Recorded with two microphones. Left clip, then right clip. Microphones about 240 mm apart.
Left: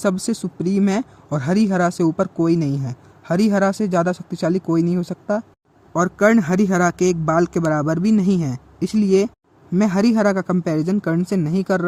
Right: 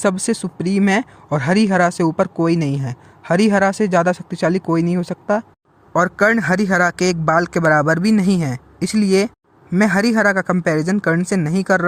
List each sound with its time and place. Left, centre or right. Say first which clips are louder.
0.0 s speech: right 3 dB; centre